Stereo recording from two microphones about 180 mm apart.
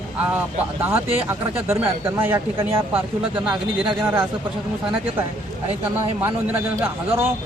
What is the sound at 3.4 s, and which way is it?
Speech, 5° right (ahead or behind).